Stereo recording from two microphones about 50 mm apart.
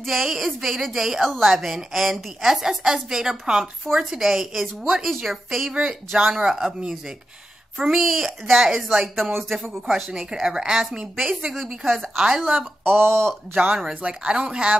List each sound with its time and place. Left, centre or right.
0.0 s a woman's voice: centre
3.8 s a woman's voice: centre
5.7 s a woman's voice: centre
7.7 s a woman's voice: centre
9.9 s a woman's voice: centre
12.2 s a woman's voice: centre
12.8 s speech: right
14.0 s speech: right